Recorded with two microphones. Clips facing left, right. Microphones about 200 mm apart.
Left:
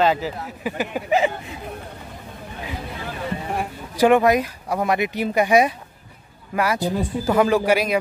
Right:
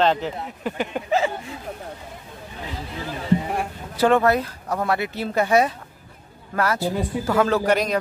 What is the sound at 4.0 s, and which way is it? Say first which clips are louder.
Speech: left 2 dB; 15° left (ahead or behind).